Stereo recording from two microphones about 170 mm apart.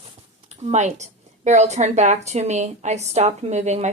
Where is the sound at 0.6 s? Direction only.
45° right (ahead or behind).